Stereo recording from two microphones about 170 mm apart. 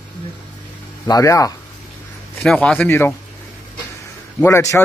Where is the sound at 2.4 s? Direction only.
5° left (ahead or behind).